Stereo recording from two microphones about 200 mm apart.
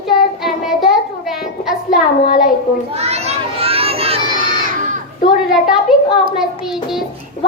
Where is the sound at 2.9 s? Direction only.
30° right (ahead or behind).